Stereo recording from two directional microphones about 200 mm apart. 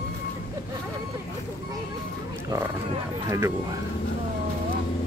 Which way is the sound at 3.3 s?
15° right (ahead or behind).